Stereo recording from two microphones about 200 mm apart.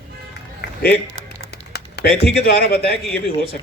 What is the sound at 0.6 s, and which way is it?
Music, 55° left (ahead or behind).